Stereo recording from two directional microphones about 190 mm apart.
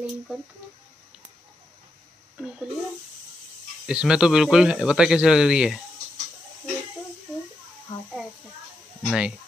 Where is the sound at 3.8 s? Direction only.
5° right (ahead or behind).